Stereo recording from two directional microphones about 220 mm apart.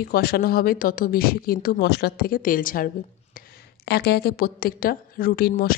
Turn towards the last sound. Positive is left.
turn(degrees=40)  # may be behind; listen again after turning